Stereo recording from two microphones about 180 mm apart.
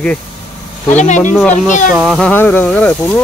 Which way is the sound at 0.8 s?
40° left (ahead or behind).